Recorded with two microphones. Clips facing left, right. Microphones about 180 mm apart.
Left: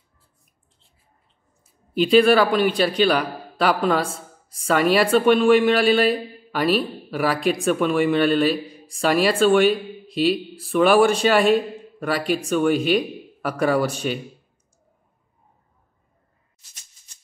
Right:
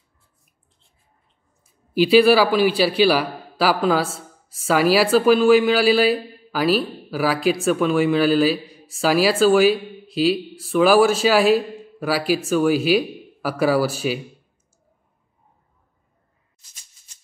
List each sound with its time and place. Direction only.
2.0 s a man's voice: 5° right (ahead or behind)